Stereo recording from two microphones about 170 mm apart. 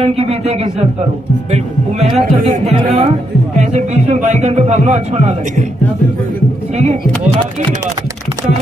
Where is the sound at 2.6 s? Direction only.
35° right (ahead or behind).